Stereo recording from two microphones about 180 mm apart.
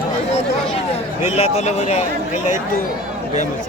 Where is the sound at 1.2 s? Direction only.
35° left (ahead or behind).